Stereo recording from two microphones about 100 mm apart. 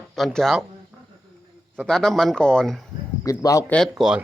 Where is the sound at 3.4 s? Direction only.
35° left (ahead or behind).